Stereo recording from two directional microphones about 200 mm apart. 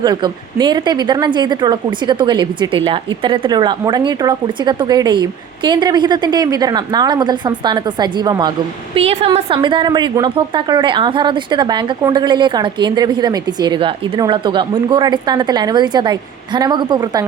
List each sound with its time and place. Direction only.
0.0 s a woman's voice: 20° right (ahead or behind)